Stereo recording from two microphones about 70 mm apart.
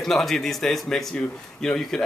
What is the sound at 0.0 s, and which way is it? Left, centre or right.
A man's voice, centre.